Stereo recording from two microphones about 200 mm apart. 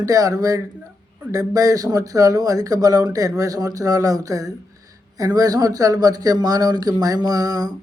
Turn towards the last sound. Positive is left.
turn(degrees=-20)  # may be behind; listen again after turning